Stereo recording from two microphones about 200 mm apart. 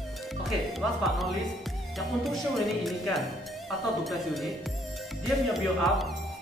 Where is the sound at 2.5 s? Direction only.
Centre (ahead or behind).